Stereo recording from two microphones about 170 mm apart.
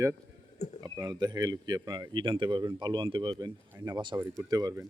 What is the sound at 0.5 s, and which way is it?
Speech, 40° left (ahead or behind).